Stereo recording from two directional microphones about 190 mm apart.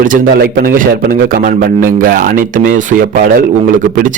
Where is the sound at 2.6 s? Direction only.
45° right (ahead or behind).